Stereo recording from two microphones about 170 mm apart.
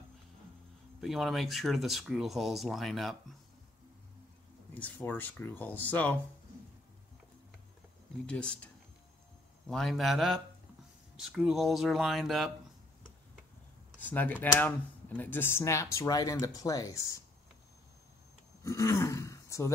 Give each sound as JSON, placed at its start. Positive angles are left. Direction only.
{"t": 1.0, "sound": "speech", "side_deg": 0}
{"t": 4.7, "sound": "speech", "side_deg": 10}
{"t": 8.3, "sound": "speech", "side_deg": 5}
{"t": 9.7, "sound": "speech", "side_deg": 0}
{"t": 13.9, "sound": "speech", "side_deg": 10}
{"t": 18.6, "sound": "speech", "side_deg": 15}